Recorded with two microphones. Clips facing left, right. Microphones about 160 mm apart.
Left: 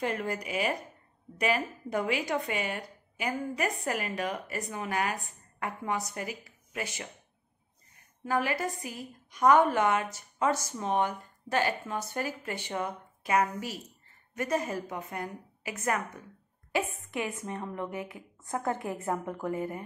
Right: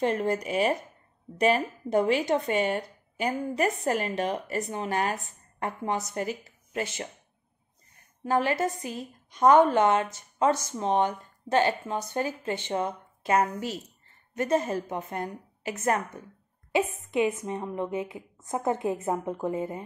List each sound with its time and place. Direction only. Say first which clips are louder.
0.0 s a woman's voice: right 6 dB; 30° right (ahead or behind)
8.3 s speech: right 4 dB; 25° right (ahead or behind)